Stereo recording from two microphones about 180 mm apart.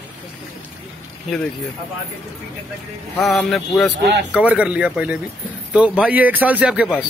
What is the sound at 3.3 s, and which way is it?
A man's voice, centre (ahead or behind).